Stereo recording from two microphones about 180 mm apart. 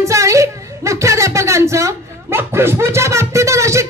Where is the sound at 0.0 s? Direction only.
15° right (ahead or behind).